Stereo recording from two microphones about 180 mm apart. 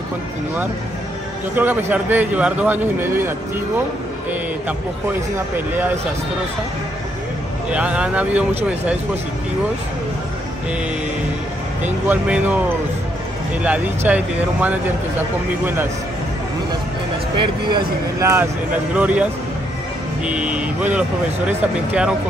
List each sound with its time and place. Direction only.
1.5 s speech: 10° right (ahead or behind)
7.7 s speech: 5° right (ahead or behind)
11.8 s speech: 10° right (ahead or behind)
13.6 s speech: 10° right (ahead or behind)
17.4 s speech: 25° right (ahead or behind)
18.9 s speech: 5° right (ahead or behind)
20.2 s speech: 5° right (ahead or behind)